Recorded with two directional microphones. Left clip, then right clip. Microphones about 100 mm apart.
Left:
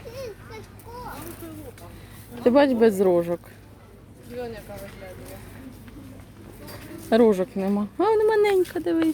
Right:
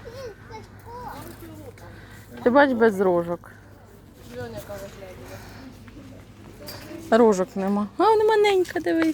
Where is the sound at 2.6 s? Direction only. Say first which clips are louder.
Left 1 dB; 20° left (ahead or behind).